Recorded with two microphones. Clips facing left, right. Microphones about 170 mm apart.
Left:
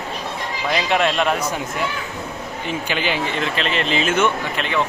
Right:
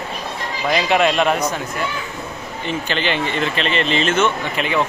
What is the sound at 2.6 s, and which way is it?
Speech, 10° left (ahead or behind).